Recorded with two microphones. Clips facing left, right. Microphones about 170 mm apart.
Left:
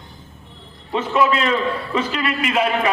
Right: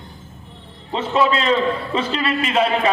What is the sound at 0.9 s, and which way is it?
A man's voice, 30° right (ahead or behind).